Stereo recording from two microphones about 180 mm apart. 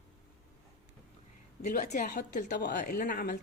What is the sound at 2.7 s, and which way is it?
Speech, 45° left (ahead or behind).